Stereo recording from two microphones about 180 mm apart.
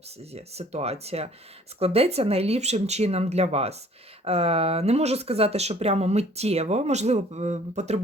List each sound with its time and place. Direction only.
0.2 s speech: 35° right (ahead or behind)